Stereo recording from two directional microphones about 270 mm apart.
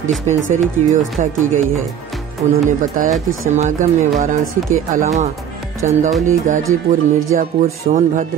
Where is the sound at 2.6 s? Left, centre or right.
Right.